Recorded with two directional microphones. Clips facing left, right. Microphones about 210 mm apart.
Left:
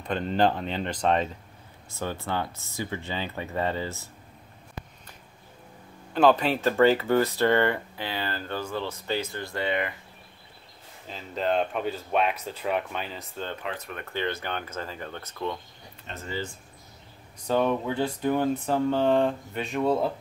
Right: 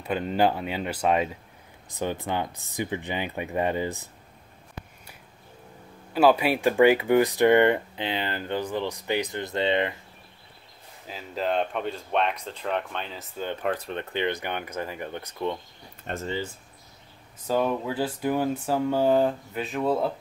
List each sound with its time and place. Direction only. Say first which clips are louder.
0.0 s speech: right 1 dB; 5° right (ahead or behind)
6.1 s speech: right 1 dB; 10° right (ahead or behind); by 9.9 s 25° right (ahead or behind)
11.1 s speech: left 1 dB; 5° right (ahead or behind)
13.7 s speech: right 5 dB; 30° right (ahead or behind)
14.1 s speech: right 1 dB; 15° right (ahead or behind)
16.1 s speech: right 7 dB; 55° right (ahead or behind)
17.5 s speech: left 1 dB; 5° right (ahead or behind)